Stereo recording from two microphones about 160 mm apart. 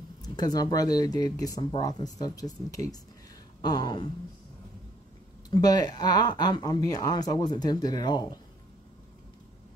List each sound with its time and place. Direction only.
0.2 s speech: 25° left (ahead or behind)
5.5 s speech: 25° left (ahead or behind)